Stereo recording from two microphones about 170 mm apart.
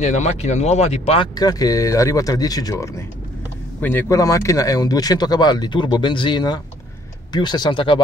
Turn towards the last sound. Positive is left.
turn(degrees=30)  # may be behind; listen again after turning